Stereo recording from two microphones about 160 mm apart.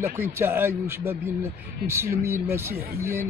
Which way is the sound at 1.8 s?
15° right (ahead or behind).